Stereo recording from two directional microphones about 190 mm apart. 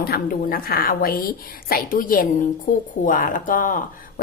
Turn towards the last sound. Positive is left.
turn(degrees=45)  # may be behind; listen again after turning